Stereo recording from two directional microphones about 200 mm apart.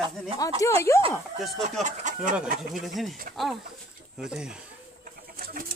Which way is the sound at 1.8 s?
40° right (ahead or behind).